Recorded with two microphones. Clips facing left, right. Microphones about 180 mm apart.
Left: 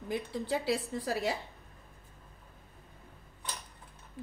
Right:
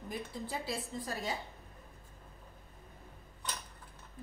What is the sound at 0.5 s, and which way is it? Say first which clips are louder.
Speech: left 10 dB; 75° left (ahead or behind).